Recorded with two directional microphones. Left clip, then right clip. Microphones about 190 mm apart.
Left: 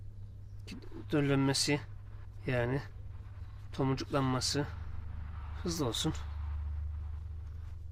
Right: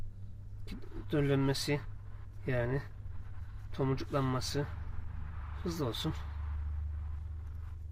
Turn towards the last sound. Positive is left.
turn(degrees=20)  # may be behind; listen again after turning